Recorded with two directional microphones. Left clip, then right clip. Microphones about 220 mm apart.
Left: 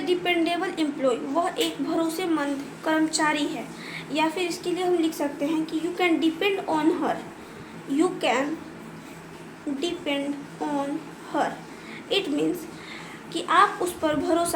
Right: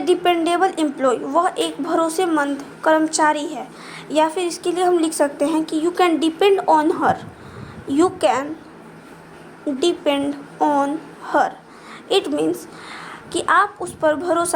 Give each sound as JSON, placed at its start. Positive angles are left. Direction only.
{"t": 0.0, "sound": "a woman's voice", "side_deg": -30}
{"t": 9.8, "sound": "a woman's voice", "side_deg": -30}
{"t": 11.3, "sound": "a woman's voice", "side_deg": -30}